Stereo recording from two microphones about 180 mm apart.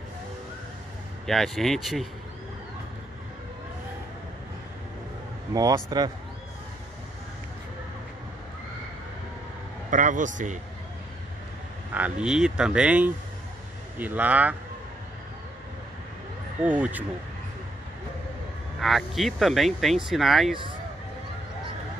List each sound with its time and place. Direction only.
1.2 s speech: centre (ahead or behind)
5.5 s speech: 20° right (ahead or behind)
9.8 s a man's voice: 45° right (ahead or behind)
11.9 s speech: 5° right (ahead or behind)
16.6 s speech: 10° right (ahead or behind)
18.8 s speech: centre (ahead or behind)